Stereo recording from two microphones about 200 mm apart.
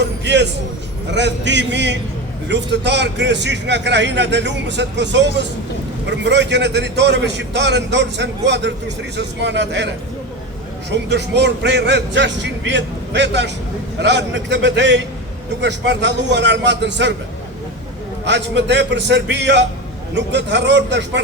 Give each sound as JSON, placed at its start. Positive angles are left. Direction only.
{"t": 0.3, "sound": "a man's voice", "side_deg": -60}
{"t": 18.3, "sound": "a man's voice", "side_deg": -60}